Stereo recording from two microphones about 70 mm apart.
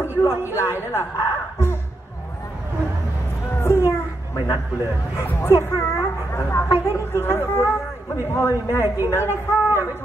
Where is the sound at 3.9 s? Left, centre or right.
Left.